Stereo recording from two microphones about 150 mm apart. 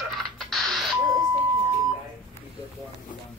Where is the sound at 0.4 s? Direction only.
Centre (ahead or behind).